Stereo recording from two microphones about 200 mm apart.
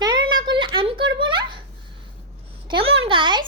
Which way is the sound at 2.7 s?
25° right (ahead or behind).